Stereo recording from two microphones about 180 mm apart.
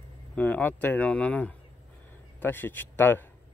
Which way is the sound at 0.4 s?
10° left (ahead or behind).